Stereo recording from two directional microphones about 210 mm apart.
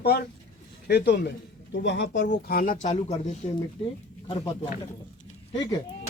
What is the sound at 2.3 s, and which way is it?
Speech, 45° left (ahead or behind).